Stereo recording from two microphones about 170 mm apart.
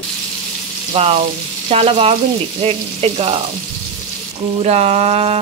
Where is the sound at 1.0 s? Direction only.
35° right (ahead or behind).